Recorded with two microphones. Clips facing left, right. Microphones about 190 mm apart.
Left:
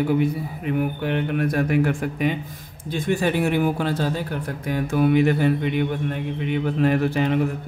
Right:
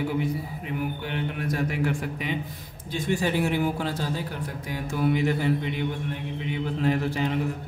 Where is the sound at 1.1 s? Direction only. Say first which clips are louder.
Left 7 dB; 60° left (ahead or behind).